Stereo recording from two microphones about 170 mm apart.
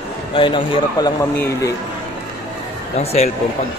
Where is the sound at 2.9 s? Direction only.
40° left (ahead or behind).